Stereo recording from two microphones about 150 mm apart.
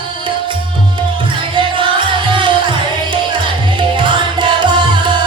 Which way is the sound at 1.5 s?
35° right (ahead or behind).